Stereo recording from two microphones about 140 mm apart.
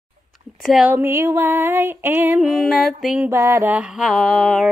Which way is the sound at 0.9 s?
20° right (ahead or behind).